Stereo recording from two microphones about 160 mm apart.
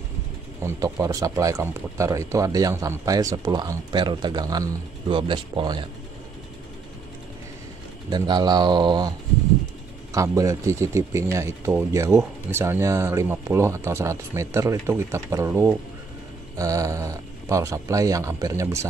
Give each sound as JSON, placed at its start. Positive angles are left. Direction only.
{"t": 0.7, "sound": "speech", "side_deg": -20}
{"t": 8.1, "sound": "speech", "side_deg": -25}
{"t": 10.1, "sound": "speech", "side_deg": -20}